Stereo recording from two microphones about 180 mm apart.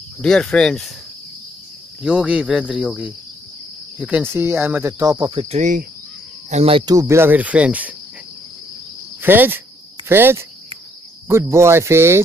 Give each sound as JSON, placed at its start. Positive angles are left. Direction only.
{"t": 0.2, "sound": "speech", "side_deg": 5}
{"t": 2.0, "sound": "speech", "side_deg": -5}
{"t": 5.3, "sound": "cricket", "side_deg": -35}
{"t": 6.9, "sound": "speech", "side_deg": -15}
{"t": 9.2, "sound": "speech", "side_deg": -10}